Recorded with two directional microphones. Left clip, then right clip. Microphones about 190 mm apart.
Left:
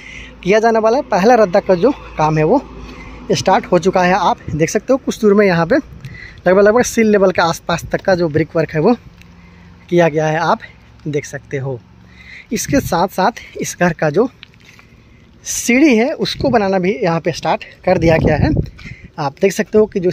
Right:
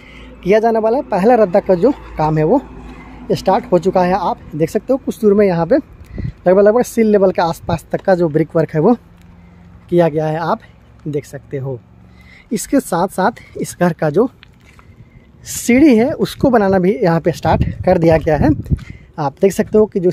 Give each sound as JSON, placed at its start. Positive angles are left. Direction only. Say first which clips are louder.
{"t": 0.0, "sound": "speech", "louder": "left 1 dB", "side_deg": -5}
{"t": 9.8, "sound": "speech", "louder": "left 1 dB", "side_deg": -5}
{"t": 12.3, "sound": "speech", "louder": "even", "side_deg": -15}
{"t": 15.4, "sound": "speech", "louder": "right 1 dB", "side_deg": -20}